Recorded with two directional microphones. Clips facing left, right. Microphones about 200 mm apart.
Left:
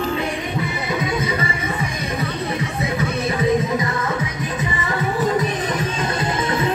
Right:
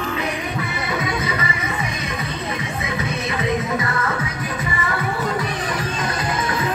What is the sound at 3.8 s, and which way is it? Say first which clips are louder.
Music: left 1 dB; 15° left (ahead or behind).